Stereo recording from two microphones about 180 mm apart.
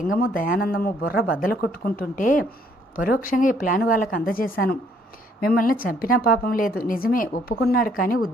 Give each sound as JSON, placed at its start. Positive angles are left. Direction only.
{"t": 0.2, "sound": "a woman's voice", "side_deg": 50}